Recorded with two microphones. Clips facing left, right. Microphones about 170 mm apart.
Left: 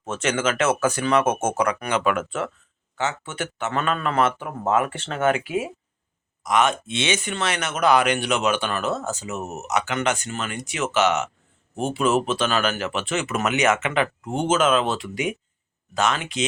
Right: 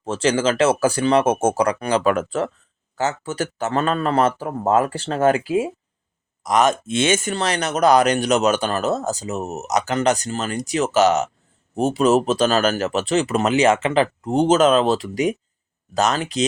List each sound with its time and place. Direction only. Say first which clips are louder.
0.0 s speech: right 5 dB; 30° right (ahead or behind)